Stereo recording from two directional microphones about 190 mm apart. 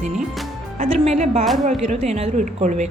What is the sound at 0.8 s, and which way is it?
A woman's voice, 35° right (ahead or behind).